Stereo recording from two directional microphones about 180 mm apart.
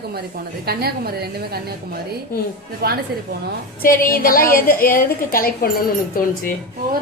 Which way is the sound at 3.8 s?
50° left (ahead or behind).